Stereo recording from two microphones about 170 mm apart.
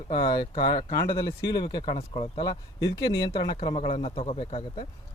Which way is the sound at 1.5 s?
25° left (ahead or behind).